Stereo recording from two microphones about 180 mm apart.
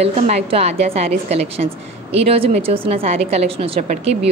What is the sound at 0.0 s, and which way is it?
A woman's voice, 35° right (ahead or behind).